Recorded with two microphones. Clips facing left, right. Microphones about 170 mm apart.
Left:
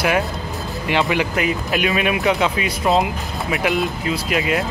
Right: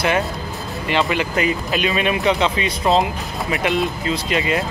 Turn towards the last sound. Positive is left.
turn(degrees=5)  # may be behind; listen again after turning